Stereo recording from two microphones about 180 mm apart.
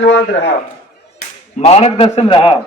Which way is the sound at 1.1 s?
35° left (ahead or behind).